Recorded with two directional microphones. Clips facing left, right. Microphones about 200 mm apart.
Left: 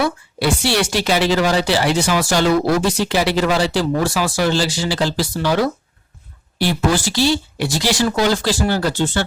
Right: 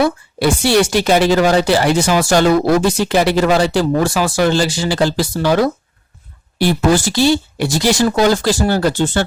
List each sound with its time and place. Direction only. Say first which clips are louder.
0.0 s a woman's voice: right 4 dB; 45° right (ahead or behind)